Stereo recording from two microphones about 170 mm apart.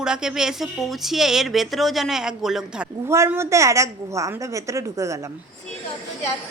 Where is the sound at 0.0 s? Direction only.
5° right (ahead or behind).